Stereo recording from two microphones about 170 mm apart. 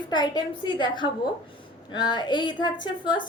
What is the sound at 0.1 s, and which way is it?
A woman's voice, 25° left (ahead or behind).